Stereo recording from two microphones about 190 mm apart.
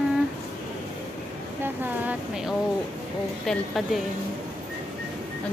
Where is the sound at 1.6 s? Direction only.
10° right (ahead or behind).